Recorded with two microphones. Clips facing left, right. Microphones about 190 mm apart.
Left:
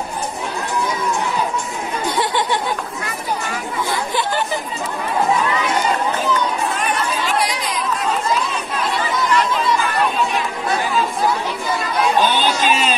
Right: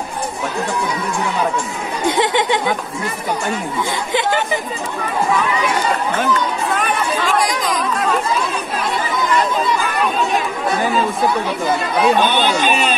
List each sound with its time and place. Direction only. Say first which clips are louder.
2.0 s chatter: right 5 dB; 20° right (ahead or behind)
12.2 s speech: right 1 dB; 60° right (ahead or behind)